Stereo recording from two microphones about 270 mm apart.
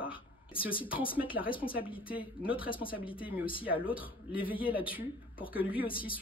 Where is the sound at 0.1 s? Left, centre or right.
Centre.